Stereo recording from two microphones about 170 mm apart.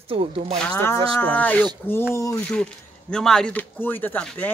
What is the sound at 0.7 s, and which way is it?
Speech, 15° left (ahead or behind).